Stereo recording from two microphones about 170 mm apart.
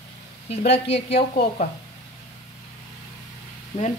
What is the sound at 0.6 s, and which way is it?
Speech, 80° left.